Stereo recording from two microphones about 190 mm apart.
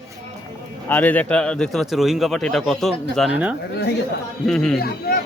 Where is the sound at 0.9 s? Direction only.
10° left (ahead or behind).